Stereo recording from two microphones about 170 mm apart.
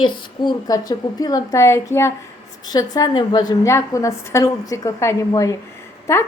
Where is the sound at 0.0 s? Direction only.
25° left (ahead or behind).